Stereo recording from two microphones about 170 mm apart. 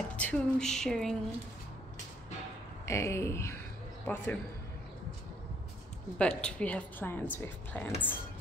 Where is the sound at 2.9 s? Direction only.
15° left (ahead or behind).